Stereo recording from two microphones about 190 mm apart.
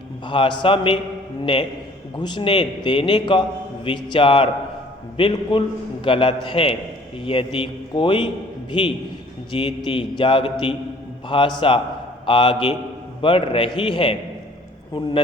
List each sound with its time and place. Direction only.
0.3 s a man's voice: 25° left (ahead or behind)
2.1 s a man's voice: 25° left (ahead or behind)
9.5 s a man's voice: 25° left (ahead or behind)